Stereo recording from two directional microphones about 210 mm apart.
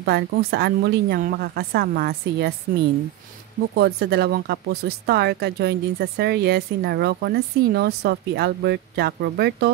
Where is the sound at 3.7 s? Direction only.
50° right (ahead or behind).